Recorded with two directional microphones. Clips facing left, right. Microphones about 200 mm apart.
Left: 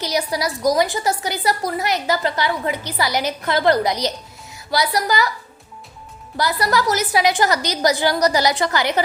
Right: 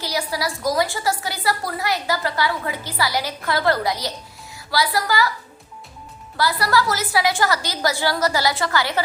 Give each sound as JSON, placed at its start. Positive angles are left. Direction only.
{"t": 0.0, "sound": "a woman's voice", "side_deg": 20}
{"t": 6.3, "sound": "a woman's voice", "side_deg": 20}